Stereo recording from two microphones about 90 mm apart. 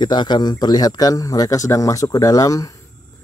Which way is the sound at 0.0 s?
55° left (ahead or behind).